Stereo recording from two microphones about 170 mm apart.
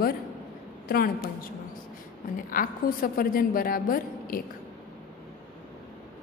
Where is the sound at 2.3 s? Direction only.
55° left (ahead or behind).